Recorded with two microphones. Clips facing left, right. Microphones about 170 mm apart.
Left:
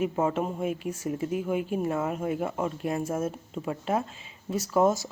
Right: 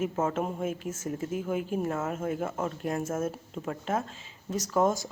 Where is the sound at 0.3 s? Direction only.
Centre (ahead or behind).